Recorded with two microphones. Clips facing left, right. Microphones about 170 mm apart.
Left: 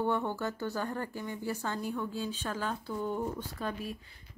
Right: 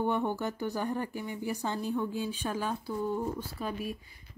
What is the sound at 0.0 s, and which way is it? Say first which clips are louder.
Speech: right 1 dB; 15° right (ahead or behind).